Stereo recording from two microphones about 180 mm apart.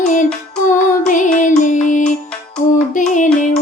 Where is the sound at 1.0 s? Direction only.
45° left (ahead or behind).